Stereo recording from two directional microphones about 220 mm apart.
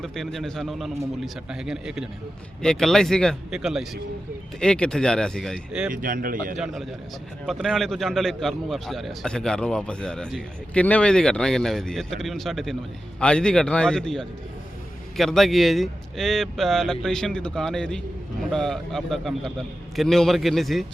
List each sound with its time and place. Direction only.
0.0 s a man's voice: centre (ahead or behind)
5.9 s speech: 40° right (ahead or behind)
7.4 s a man's voice: centre (ahead or behind)